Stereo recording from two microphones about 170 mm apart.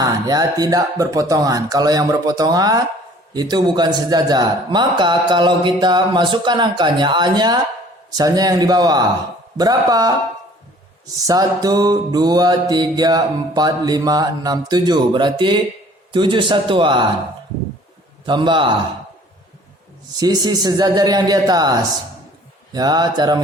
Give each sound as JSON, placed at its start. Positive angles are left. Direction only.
{"t": 0.0, "sound": "mantra", "side_deg": -20}
{"t": 11.3, "sound": "mantra", "side_deg": -20}
{"t": 18.3, "sound": "mantra", "side_deg": -25}
{"t": 20.1, "sound": "mantra", "side_deg": -25}